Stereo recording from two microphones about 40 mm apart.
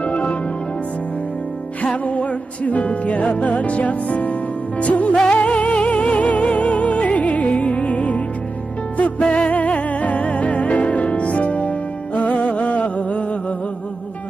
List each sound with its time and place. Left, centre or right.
0.0 s music: left
2.0 s music: left